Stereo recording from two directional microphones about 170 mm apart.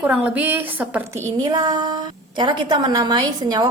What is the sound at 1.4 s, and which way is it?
A woman's voice, 25° right (ahead or behind).